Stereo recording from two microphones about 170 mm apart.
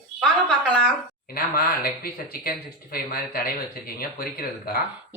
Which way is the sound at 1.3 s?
60° left (ahead or behind).